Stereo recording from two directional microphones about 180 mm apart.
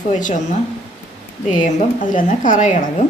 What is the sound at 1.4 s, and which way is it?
A woman's voice, 45° left (ahead or behind).